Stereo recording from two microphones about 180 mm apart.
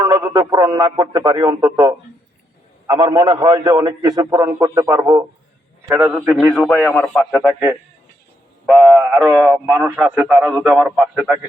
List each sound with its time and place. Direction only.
0.0 s a man's voice: 20° right (ahead or behind)
6.5 s a man's voice: 5° left (ahead or behind)
8.6 s mantra: centre (ahead or behind)
9.0 s a man's voice: 10° right (ahead or behind)